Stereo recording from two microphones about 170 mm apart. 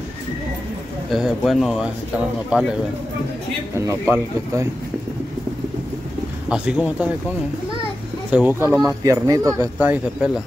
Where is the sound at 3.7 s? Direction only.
15° right (ahead or behind).